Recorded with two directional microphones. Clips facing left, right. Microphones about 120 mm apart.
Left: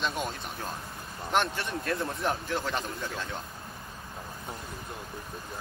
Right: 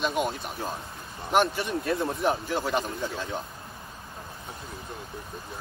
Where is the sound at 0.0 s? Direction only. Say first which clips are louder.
Right 5 dB; 10° right (ahead or behind).